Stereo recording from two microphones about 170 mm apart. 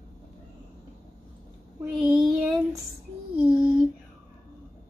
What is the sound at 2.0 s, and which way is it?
Child singing, 5° right (ahead or behind).